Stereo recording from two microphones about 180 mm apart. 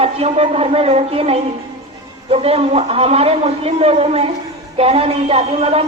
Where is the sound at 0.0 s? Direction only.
35° right (ahead or behind).